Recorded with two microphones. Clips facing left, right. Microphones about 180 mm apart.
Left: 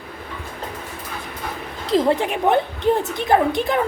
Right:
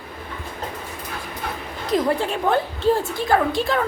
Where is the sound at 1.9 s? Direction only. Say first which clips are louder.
Left 3 dB; 25° left (ahead or behind).